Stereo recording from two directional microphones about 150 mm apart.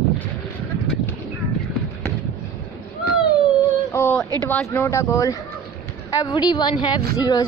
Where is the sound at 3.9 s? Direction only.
15° left (ahead or behind).